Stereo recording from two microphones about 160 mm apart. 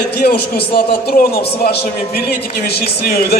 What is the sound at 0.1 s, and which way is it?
A man's voice, 80° left.